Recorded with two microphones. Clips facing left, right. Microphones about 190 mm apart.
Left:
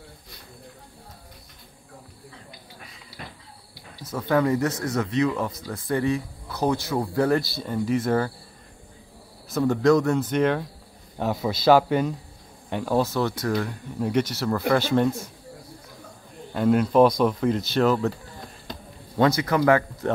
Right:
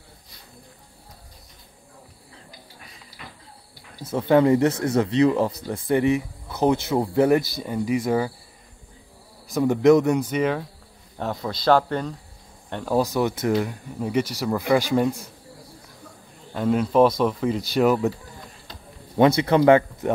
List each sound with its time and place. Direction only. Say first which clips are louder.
4.0 s speech: right 5 dB; 25° right (ahead or behind); by 8.3 s 10° right (ahead or behind)
9.5 s speech: right 3 dB; 15° right (ahead or behind); by 13.0 s centre (ahead or behind)
13.0 s speech: right 2 dB; 15° right (ahead or behind)
13.9 s speech: even; 5° right (ahead or behind)
16.5 s speech: left 1 dB; centre (ahead or behind)
19.1 s speech: right 4 dB; 25° right (ahead or behind)